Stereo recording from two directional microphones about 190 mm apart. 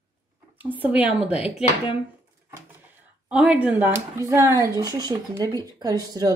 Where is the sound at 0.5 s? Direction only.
10° right (ahead or behind).